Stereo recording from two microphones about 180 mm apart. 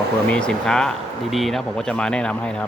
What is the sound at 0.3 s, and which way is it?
Speech, 5° left (ahead or behind).